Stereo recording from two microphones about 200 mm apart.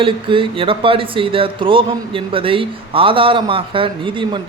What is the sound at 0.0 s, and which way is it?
A man's voice, 25° right (ahead or behind).